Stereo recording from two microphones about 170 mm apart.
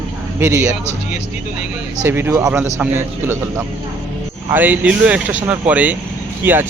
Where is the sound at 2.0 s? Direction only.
15° right (ahead or behind).